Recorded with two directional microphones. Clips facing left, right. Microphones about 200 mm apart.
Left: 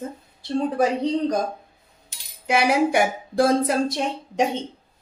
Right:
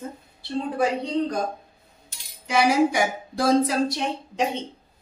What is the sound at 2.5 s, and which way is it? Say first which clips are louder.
A woman's voice: even; 60° left (ahead or behind).